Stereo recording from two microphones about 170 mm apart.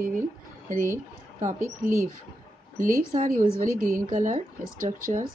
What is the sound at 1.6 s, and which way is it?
Speech, 15° right (ahead or behind).